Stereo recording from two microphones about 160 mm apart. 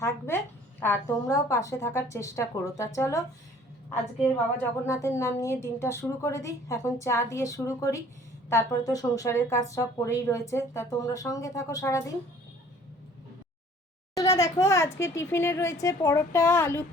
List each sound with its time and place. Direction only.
0.0 s a woman's voice: 15° left (ahead or behind)
4.9 s speech: 20° left (ahead or behind)
14.2 s a woman's voice: 20° left (ahead or behind)